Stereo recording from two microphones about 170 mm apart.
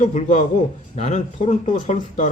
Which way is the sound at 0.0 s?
45° left (ahead or behind).